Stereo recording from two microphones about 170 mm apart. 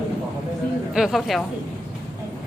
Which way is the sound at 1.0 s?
Centre (ahead or behind).